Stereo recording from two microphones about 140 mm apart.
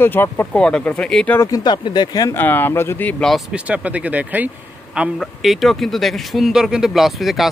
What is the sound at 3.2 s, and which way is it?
Speech, centre (ahead or behind).